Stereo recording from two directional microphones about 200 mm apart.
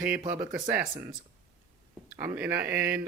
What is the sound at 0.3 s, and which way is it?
Speech, 10° right (ahead or behind).